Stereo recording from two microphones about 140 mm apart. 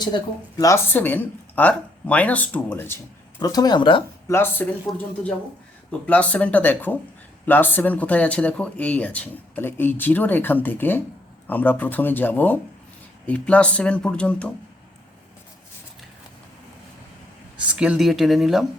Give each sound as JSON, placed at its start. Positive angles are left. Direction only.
{"t": 0.6, "sound": "speech", "side_deg": 20}
{"t": 3.4, "sound": "speech", "side_deg": 30}
{"t": 4.3, "sound": "speech", "side_deg": 15}
{"t": 5.9, "sound": "speech", "side_deg": 10}
{"t": 17.6, "sound": "speech", "side_deg": -10}